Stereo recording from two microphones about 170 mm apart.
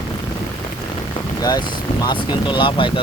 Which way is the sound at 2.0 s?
25° left (ahead or behind).